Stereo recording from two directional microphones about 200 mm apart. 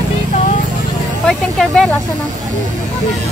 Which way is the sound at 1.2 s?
5° left (ahead or behind).